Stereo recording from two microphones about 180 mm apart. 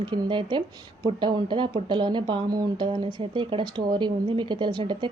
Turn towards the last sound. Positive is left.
turn(degrees=-25)  # may be behind; listen again after turning